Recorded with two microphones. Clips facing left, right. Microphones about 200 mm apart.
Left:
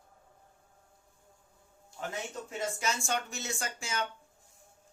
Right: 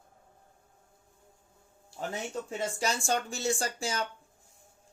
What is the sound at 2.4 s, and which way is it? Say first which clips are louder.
Speech: right 1 dB; 35° right (ahead or behind).